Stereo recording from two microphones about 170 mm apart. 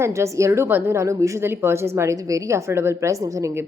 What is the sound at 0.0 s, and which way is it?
A woman's voice, 15° right (ahead or behind).